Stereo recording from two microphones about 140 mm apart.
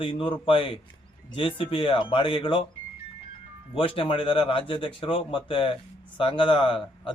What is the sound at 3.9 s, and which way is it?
A man's voice, 35° left (ahead or behind).